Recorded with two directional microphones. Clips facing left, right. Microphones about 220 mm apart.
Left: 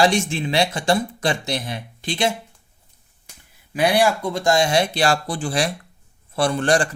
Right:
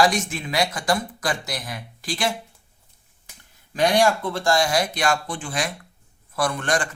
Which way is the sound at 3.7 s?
10° left (ahead or behind).